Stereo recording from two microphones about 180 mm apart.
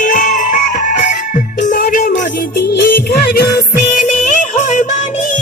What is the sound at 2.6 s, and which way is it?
Music, 65° left (ahead or behind).